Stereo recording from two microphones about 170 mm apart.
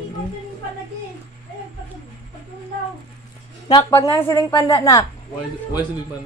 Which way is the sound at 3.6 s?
20° left (ahead or behind).